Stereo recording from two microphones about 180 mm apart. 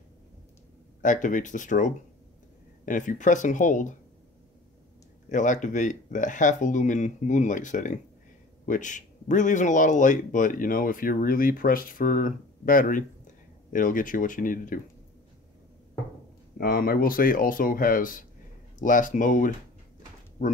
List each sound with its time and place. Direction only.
1.0 s speech: 45° left (ahead or behind)
5.3 s speech: 45° left (ahead or behind)
16.5 s speech: 55° left (ahead or behind)